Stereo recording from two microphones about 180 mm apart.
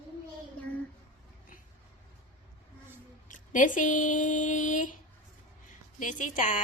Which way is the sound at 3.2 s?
45° left (ahead or behind).